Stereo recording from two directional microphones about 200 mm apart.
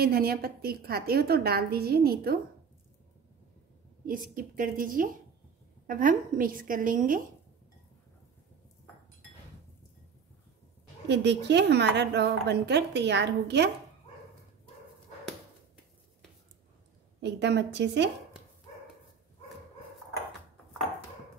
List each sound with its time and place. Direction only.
0.0 s a woman's voice: 50° right (ahead or behind)
4.0 s a woman's voice: 45° right (ahead or behind)
11.1 s a woman's voice: 60° right (ahead or behind)
17.2 s a woman's voice: 60° right (ahead or behind)